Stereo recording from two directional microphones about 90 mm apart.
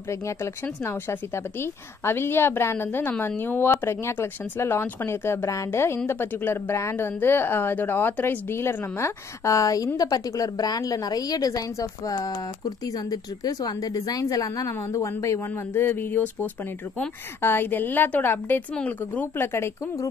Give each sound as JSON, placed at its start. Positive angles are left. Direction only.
{"t": 0.1, "sound": "a woman's voice", "side_deg": 30}